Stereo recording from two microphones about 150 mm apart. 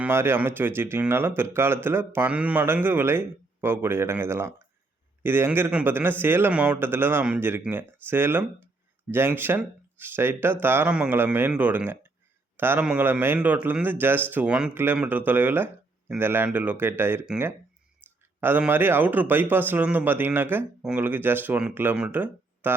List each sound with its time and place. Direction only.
0.0 s a man's voice: 15° right (ahead or behind)
18.0 s a sound: 15° right (ahead or behind)
18.3 s a man's voice: 15° right (ahead or behind)